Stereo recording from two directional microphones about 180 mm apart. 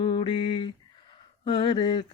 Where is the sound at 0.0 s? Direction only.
30° left (ahead or behind).